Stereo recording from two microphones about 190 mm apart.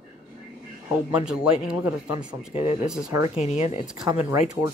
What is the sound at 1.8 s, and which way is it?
Speech, 20° right (ahead or behind).